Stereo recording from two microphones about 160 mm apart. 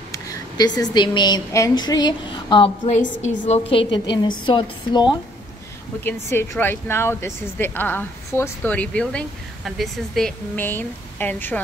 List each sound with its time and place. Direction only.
0.1 s a woman's voice: 20° left (ahead or behind)
2.9 s a woman's voice: 45° left (ahead or behind)
4.5 s speech: 30° left (ahead or behind)
6.3 s a woman's voice: 15° left (ahead or behind)